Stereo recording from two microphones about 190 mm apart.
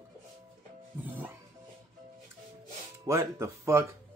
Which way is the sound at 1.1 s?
10° right (ahead or behind).